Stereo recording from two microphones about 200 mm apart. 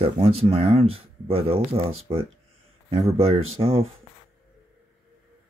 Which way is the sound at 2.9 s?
20° right (ahead or behind).